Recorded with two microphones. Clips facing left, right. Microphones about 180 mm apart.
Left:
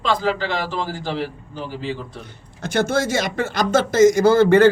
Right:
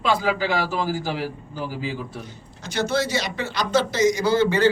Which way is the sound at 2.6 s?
50° left (ahead or behind).